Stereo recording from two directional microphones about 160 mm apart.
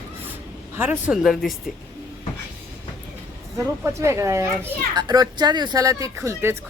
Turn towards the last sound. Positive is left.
turn(degrees=-15)  # may be behind; listen again after turning